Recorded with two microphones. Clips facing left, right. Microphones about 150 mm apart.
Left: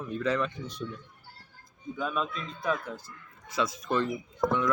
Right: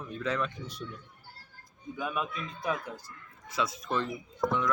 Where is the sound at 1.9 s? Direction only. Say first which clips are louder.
Left 2 dB; 15° right (ahead or behind).